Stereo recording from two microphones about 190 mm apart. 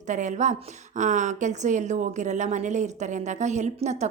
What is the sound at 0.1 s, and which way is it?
A woman's voice, 40° right (ahead or behind).